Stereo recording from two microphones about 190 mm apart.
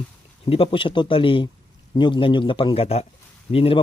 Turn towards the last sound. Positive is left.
turn(degrees=30)  # may be behind; listen again after turning